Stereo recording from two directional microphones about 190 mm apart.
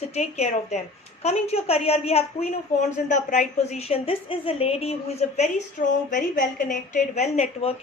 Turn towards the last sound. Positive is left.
turn(degrees=35)  # may be behind; listen again after turning